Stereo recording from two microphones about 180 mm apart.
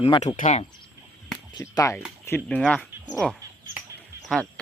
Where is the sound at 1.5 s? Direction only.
20° left (ahead or behind).